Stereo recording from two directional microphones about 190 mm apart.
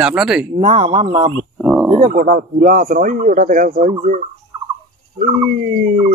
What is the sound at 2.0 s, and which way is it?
Speech, 45° right (ahead or behind).